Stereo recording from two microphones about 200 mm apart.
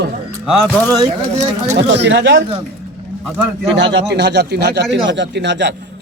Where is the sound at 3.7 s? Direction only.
60° right (ahead or behind).